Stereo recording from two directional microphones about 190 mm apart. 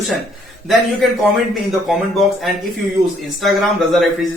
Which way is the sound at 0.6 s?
Centre (ahead or behind).